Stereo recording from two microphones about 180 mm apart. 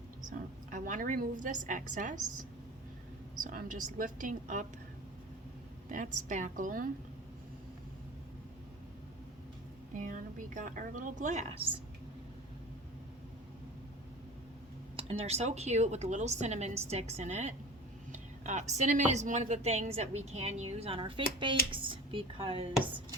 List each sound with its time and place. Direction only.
0.3 s a woman's voice: 45° right (ahead or behind)
3.4 s a woman's voice: 45° right (ahead or behind)
5.9 s a woman's voice: 45° right (ahead or behind)
9.9 s a woman's voice: 45° right (ahead or behind)
14.9 s a woman's voice: 35° right (ahead or behind)